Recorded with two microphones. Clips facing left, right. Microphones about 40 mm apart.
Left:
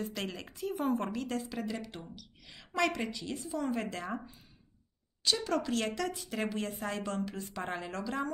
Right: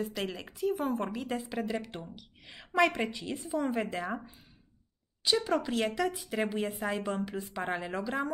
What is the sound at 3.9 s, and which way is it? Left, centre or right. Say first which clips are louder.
A woman's voice: right 3 dB; centre.